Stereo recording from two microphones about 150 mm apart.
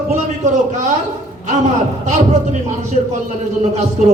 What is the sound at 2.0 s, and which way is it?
Speech, 50° right (ahead or behind).